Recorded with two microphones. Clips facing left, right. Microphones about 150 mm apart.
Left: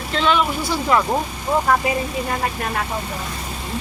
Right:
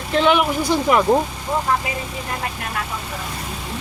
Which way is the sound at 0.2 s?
15° right (ahead or behind).